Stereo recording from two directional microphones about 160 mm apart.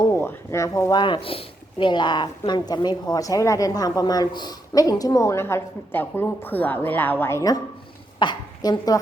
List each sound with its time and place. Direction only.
0.0 s a woman's voice: 15° left (ahead or behind)